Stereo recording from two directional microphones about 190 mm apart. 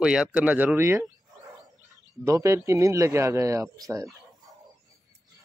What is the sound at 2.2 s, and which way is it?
Speech, 15° right (ahead or behind).